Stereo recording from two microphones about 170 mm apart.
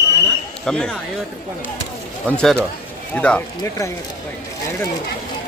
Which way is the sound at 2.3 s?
5° left (ahead or behind).